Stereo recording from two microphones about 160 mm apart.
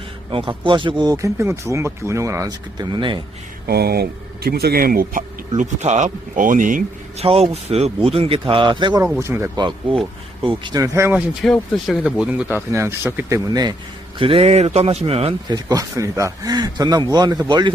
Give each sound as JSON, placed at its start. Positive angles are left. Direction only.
{"t": 0.3, "sound": "speech", "side_deg": -30}
{"t": 3.7, "sound": "speech", "side_deg": -80}
{"t": 5.5, "sound": "speech", "side_deg": -45}
{"t": 7.2, "sound": "speech", "side_deg": -40}
{"t": 9.1, "sound": "speech", "side_deg": -15}
{"t": 9.6, "sound": "speech", "side_deg": -30}
{"t": 11.3, "sound": "speech", "side_deg": 0}
{"t": 14.2, "sound": "speech", "side_deg": -35}
{"t": 15.5, "sound": "speech", "side_deg": -20}